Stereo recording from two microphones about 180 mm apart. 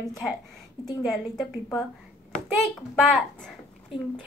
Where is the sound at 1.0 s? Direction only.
Centre (ahead or behind).